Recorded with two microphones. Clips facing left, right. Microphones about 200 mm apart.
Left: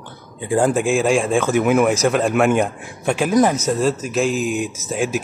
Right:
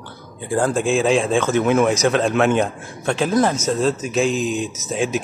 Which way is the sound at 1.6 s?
Centre (ahead or behind).